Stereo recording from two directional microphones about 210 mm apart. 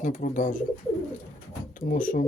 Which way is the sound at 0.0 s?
35° left (ahead or behind).